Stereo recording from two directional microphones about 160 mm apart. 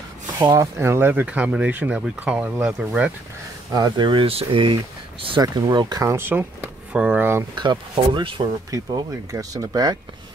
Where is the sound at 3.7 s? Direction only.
25° right (ahead or behind).